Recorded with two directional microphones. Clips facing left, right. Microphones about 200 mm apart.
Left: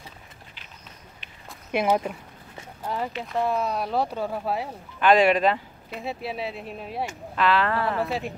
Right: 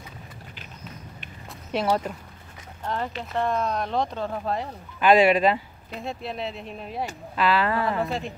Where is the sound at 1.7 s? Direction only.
15° left (ahead or behind).